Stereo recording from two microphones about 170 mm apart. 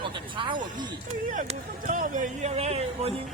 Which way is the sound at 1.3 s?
50° right (ahead or behind).